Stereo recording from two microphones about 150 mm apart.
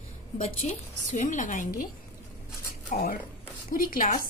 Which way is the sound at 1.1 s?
55° left (ahead or behind).